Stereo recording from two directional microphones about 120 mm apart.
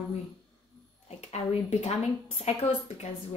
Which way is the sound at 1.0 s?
65° left (ahead or behind).